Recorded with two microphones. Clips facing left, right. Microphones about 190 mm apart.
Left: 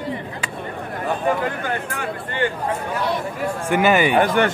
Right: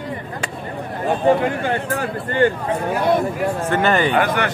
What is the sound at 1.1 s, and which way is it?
Speech, 30° right (ahead or behind).